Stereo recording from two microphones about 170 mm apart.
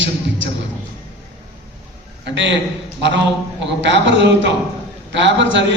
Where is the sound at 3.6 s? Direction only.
90° right.